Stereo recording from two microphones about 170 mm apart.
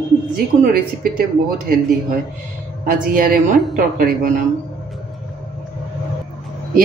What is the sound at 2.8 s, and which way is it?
A woman's voice, 55° right (ahead or behind).